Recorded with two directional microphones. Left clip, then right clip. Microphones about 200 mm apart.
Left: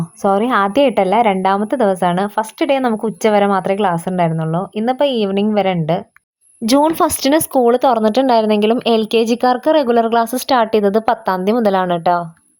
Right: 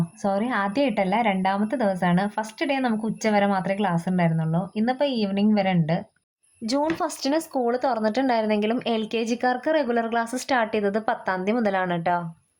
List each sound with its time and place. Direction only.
0.2 s a woman's voice: 30° left (ahead or behind)
6.7 s speech: 45° left (ahead or behind); by 12.2 s 30° left (ahead or behind)